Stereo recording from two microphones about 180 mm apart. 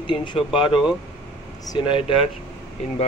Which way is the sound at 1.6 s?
25° left (ahead or behind).